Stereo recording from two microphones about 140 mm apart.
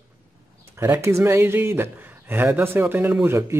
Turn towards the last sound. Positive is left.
turn(degrees=-20)  # may be behind; listen again after turning